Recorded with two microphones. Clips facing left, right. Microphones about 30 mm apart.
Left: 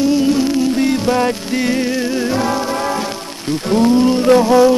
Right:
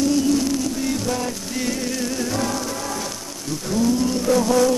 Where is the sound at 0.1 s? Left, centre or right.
Left.